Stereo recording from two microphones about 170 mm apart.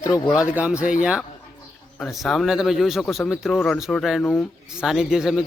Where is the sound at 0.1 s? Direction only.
5° right (ahead or behind).